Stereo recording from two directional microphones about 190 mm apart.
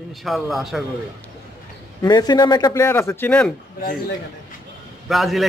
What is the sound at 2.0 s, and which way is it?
A man's voice, 20° left (ahead or behind).